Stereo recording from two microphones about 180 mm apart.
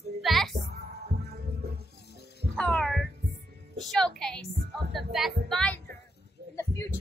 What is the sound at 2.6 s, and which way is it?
Music, 5° left (ahead or behind).